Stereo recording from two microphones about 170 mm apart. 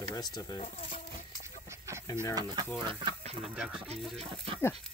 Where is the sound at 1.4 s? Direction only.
15° right (ahead or behind).